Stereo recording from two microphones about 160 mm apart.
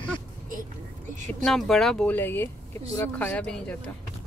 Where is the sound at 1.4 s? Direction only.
Centre (ahead or behind).